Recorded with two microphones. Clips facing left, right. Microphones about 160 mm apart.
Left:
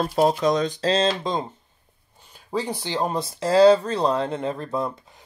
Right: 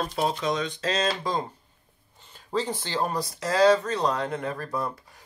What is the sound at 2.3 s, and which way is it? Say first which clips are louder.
Speech: left 1 dB; 10° left (ahead or behind).